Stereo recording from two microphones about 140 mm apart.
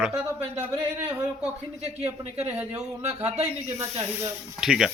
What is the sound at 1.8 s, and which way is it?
Speech, 50° right (ahead or behind).